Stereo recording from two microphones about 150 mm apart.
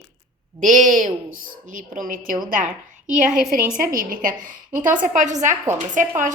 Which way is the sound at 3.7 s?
65° right (ahead or behind).